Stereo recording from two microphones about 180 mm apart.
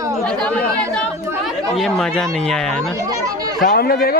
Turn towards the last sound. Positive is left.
turn(degrees=55)  # may be behind; listen again after turning